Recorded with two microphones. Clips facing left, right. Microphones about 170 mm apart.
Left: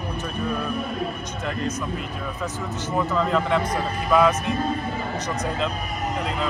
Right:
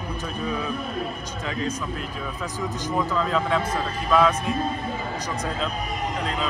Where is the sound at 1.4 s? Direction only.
5° left (ahead or behind).